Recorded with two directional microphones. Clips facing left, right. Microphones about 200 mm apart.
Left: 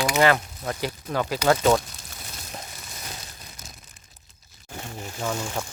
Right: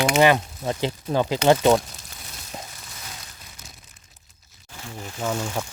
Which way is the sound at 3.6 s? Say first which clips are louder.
Left 1 dB; 40° left (ahead or behind).